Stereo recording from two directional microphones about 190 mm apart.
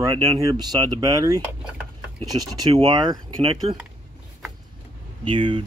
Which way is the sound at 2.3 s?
30° right (ahead or behind).